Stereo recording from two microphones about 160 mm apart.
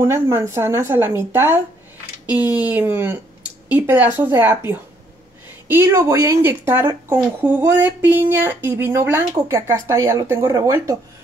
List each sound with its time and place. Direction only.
0.0 s speech: 15° right (ahead or behind)